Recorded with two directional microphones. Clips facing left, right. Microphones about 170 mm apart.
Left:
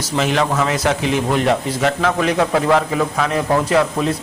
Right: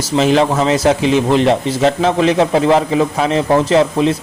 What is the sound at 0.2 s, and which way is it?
A man's voice, 30° right (ahead or behind).